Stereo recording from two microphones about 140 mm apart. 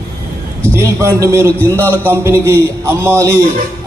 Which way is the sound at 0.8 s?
20° right (ahead or behind).